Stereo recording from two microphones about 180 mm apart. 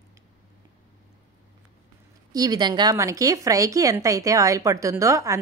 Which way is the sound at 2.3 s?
20° right (ahead or behind).